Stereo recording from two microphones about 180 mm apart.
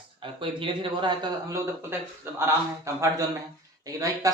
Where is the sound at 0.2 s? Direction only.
30° right (ahead or behind).